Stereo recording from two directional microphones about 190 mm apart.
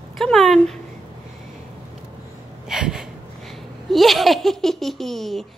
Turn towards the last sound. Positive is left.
turn(degrees=0)  # may be behind; listen again after turning